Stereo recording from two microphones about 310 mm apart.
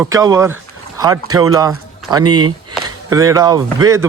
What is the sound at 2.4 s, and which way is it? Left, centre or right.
Chop, right.